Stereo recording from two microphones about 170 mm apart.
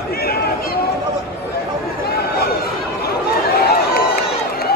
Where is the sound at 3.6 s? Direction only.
65° left (ahead or behind).